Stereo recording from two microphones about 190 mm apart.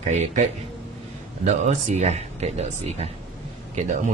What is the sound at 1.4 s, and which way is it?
Speech, 35° right (ahead or behind).